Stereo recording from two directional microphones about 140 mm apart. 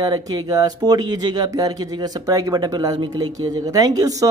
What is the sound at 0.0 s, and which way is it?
Speech, 25° right (ahead or behind).